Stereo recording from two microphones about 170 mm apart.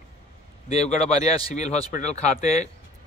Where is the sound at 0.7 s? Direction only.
40° left (ahead or behind).